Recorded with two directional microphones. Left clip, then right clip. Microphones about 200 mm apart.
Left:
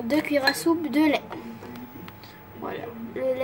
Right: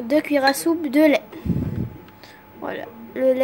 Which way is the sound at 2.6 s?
45° right (ahead or behind).